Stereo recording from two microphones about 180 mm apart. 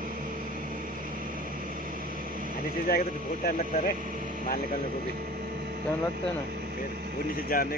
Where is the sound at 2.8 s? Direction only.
55° left (ahead or behind).